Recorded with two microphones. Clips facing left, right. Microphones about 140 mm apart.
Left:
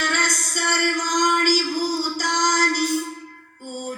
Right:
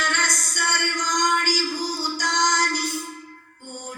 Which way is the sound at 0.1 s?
50° left (ahead or behind).